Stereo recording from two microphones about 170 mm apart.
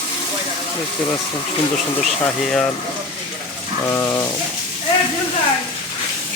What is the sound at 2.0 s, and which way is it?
Speech, centre (ahead or behind).